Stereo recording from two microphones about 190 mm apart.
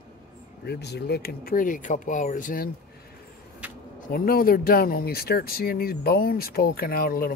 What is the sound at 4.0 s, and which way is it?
Speech, 50° left (ahead or behind).